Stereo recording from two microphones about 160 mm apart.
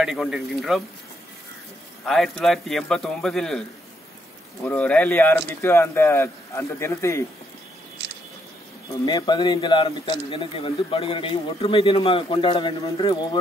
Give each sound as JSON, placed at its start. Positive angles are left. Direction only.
{"t": 0.0, "sound": "a man's voice", "side_deg": -5}
{"t": 2.0, "sound": "a man's voice", "side_deg": 0}
{"t": 4.6, "sound": "a man's voice", "side_deg": 10}
{"t": 8.8, "sound": "a man's voice", "side_deg": 25}